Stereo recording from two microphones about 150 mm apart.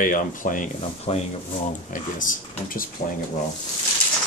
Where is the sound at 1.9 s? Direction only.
65° left (ahead or behind).